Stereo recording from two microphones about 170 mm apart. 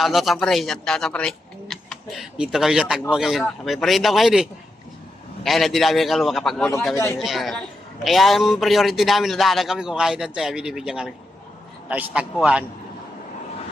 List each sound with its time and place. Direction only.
0.0 s a man's voice: centre (ahead or behind)
6.9 s speech: 15° left (ahead or behind)
7.2 s a man's voice: centre (ahead or behind)